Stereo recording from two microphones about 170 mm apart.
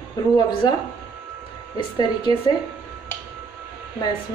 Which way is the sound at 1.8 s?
25° left (ahead or behind).